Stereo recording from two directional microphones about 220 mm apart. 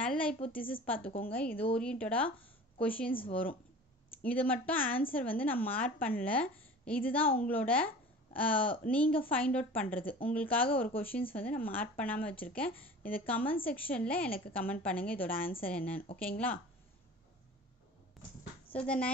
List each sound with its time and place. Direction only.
0.0 s a woman's voice: 5° left (ahead or behind)
3.1 s speech: 25° left (ahead or behind)
4.2 s a woman's voice: 5° left (ahead or behind)
18.2 s a sound: centre (ahead or behind)
18.7 s speech: 5° left (ahead or behind)